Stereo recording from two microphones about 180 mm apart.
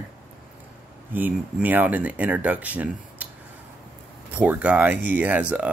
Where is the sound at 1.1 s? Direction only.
10° right (ahead or behind).